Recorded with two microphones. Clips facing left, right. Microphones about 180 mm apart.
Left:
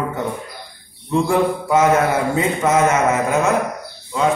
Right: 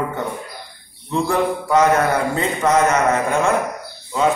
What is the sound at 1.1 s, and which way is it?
A man's voice, 10° left (ahead or behind).